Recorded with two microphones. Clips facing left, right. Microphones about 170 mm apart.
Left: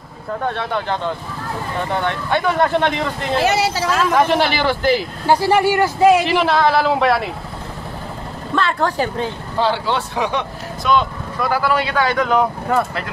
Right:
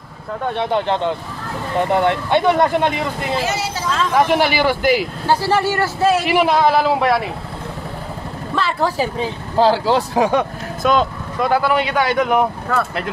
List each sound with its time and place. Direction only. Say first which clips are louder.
0.6 s speech: right 4 dB; 25° right (ahead or behind)
2.8 s speech: even; 5° right (ahead or behind)
3.3 s speech: left 5 dB; 65° left (ahead or behind)
4.3 s speech: right 1 dB; 10° right (ahead or behind)
5.2 s speech: left 6 dB; 15° left (ahead or behind)
6.2 s speech: right 1 dB; 10° right (ahead or behind)
8.5 s speech: even; 5° right (ahead or behind)
9.6 s speech: right 5 dB; 35° right (ahead or behind)
11.4 s speech: right 2 dB; 20° right (ahead or behind)